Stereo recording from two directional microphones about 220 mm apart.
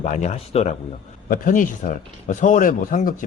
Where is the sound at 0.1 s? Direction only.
30° left (ahead or behind).